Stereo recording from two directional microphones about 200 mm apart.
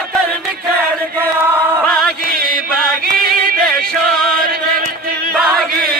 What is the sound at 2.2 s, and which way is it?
Chant, 45° right (ahead or behind).